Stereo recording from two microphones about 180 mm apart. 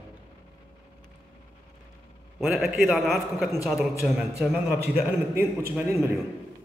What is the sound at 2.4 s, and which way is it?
A man's voice, 5° right (ahead or behind).